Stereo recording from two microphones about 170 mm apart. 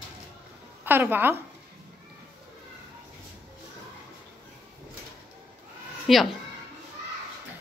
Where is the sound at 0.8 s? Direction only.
10° right (ahead or behind).